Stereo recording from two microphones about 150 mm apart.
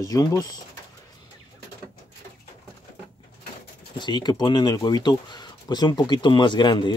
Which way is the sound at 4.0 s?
30° left (ahead or behind).